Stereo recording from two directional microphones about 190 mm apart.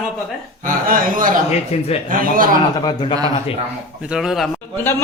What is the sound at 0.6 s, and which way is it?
Speech, 50° right (ahead or behind).